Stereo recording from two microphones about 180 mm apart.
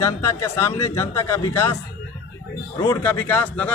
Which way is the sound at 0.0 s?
15° left (ahead or behind).